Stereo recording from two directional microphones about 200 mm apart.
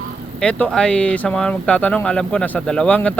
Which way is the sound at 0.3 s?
5° left (ahead or behind).